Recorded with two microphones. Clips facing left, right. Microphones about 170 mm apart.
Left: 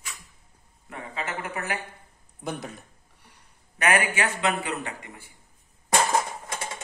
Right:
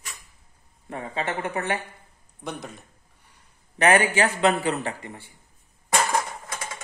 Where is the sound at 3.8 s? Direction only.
30° right (ahead or behind).